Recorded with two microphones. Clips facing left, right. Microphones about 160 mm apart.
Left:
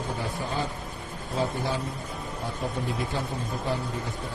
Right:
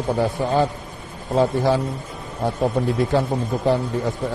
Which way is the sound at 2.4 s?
75° right (ahead or behind).